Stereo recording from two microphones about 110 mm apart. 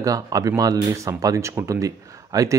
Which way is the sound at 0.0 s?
30° right (ahead or behind).